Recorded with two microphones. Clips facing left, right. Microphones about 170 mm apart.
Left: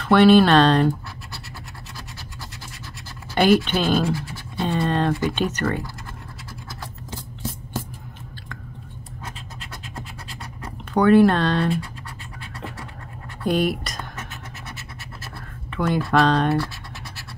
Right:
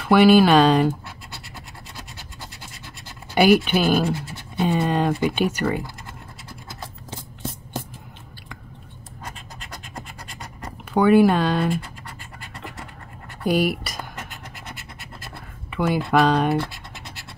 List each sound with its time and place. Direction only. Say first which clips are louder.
0.0 s speech: even; 5° right (ahead or behind)
3.3 s speech: right 1 dB; 10° right (ahead or behind)
10.6 s speech: even; 10° right (ahead or behind)
13.4 s speech: even; 5° right (ahead or behind)
15.7 s speech: right 1 dB; 5° right (ahead or behind)